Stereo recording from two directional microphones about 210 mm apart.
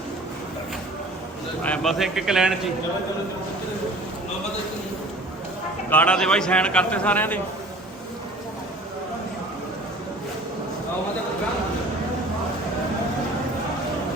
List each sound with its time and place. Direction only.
1.6 s a man's voice: 5° left (ahead or behind)
5.9 s a man's voice: 5° left (ahead or behind)